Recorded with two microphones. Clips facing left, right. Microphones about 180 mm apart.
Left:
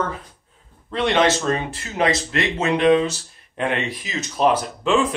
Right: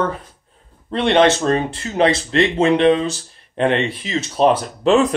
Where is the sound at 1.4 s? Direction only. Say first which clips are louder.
Right 5 dB; 30° right (ahead or behind).